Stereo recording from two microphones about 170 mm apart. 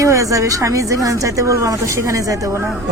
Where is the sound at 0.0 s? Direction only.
20° right (ahead or behind).